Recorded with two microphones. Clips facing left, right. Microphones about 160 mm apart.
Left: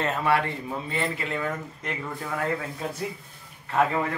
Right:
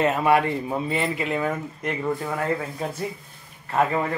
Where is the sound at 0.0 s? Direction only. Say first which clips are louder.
Right 5 dB; 15° right (ahead or behind).